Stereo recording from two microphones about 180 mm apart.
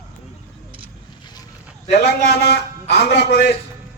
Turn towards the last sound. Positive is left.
turn(degrees=70)  # may be behind; listen again after turning